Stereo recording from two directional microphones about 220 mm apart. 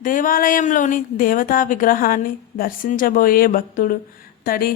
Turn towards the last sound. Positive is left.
turn(degrees=40)  # may be behind; listen again after turning